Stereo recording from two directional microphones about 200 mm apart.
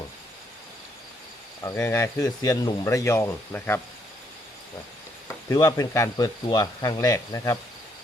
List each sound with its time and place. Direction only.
1.6 s speech: 10° left (ahead or behind)
5.5 s speech: 15° left (ahead or behind)